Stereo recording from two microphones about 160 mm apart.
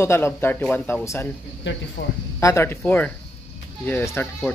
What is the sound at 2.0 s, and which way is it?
Speech, 90° left.